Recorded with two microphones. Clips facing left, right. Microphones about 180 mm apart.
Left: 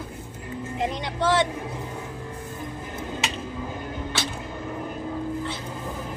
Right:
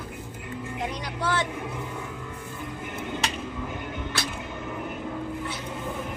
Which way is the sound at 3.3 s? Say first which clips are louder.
Left 1 dB; 35° left (ahead or behind).